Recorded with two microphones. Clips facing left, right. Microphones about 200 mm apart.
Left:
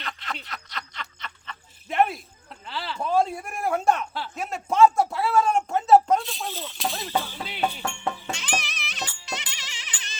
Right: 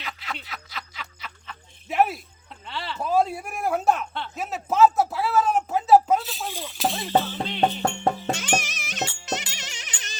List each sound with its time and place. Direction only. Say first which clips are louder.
0.0 s snicker: even; 5° right (ahead or behind)
6.5 s rattle: even; 15° right (ahead or behind)
6.7 s a sound: right 5 dB; centre (ahead or behind)
7.8 s music: right 6 dB; 40° right (ahead or behind)